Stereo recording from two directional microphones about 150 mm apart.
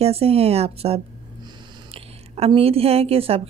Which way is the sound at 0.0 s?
40° right (ahead or behind).